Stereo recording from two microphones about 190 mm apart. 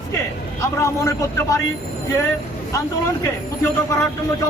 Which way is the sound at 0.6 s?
15° left (ahead or behind).